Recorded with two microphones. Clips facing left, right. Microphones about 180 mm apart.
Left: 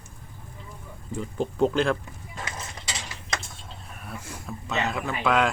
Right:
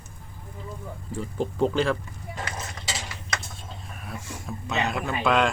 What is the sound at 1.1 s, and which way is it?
Speech, centre (ahead or behind).